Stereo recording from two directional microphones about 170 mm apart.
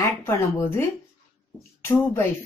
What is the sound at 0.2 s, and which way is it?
Speech, 15° left (ahead or behind).